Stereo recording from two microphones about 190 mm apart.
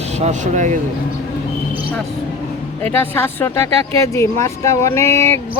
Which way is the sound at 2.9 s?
10° left (ahead or behind).